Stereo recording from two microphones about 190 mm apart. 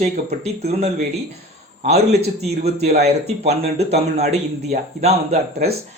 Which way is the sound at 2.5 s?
35° right (ahead or behind).